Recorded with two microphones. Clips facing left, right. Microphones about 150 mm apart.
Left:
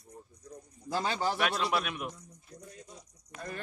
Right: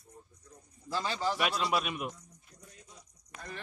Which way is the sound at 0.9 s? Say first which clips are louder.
Left 2 dB; 50° left (ahead or behind).